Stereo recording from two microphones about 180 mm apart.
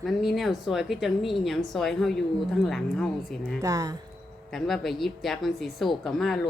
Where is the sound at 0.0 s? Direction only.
Centre (ahead or behind).